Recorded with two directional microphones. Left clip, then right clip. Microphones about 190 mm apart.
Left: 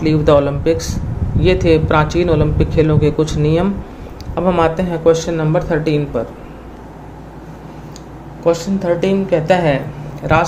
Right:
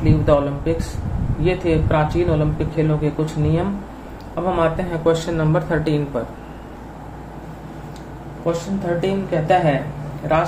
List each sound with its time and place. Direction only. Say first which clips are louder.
0.0 s speech: left 5 dB; 40° left (ahead or behind)
5.0 s speech: left 5 dB; 25° left (ahead or behind)
8.5 s a woman's voice: left 7 dB; 45° left (ahead or behind)